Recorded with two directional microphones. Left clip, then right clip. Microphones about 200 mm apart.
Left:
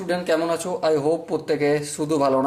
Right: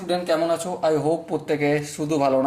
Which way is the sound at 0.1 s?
15° left (ahead or behind).